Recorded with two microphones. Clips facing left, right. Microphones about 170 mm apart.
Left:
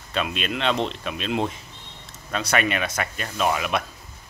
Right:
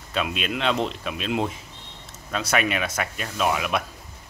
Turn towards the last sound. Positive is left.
turn(degrees=0)  # may be behind; listen again after turning